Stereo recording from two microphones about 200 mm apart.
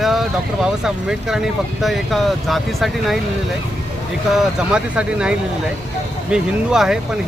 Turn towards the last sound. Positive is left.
turn(degrees=-5)  # may be behind; listen again after turning